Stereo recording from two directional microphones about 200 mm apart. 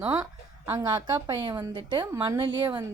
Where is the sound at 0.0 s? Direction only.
10° right (ahead or behind).